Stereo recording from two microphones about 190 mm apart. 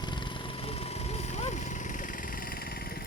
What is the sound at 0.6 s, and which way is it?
Vehicle, 35° left (ahead or behind).